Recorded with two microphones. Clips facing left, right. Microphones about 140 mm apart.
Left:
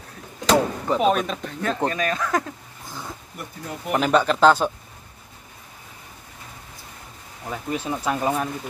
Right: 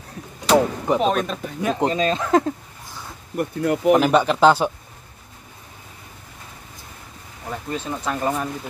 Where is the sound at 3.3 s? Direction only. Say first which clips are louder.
Right 16 dB; 80° right.